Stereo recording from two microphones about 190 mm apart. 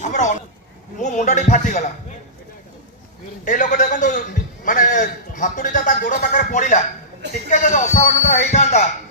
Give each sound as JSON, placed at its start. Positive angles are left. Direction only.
{"t": 0.0, "sound": "a man's voice", "side_deg": 40}
{"t": 3.4, "sound": "a man's voice", "side_deg": 40}